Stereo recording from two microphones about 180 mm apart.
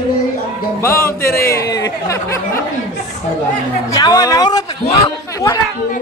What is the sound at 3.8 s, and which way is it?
A man's voice, 20° left (ahead or behind).